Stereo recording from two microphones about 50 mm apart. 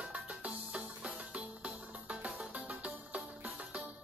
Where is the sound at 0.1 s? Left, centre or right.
Right.